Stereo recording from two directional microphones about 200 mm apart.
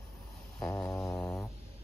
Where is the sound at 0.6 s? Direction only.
5° left (ahead or behind).